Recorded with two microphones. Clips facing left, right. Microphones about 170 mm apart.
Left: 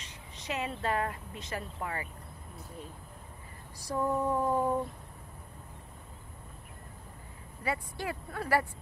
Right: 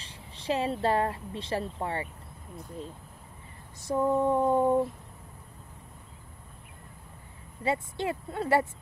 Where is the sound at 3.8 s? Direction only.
25° right (ahead or behind).